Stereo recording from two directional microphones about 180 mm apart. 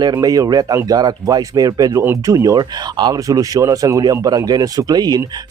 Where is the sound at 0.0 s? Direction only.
20° right (ahead or behind).